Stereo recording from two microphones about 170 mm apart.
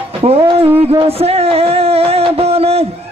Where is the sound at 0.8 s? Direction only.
35° right (ahead or behind).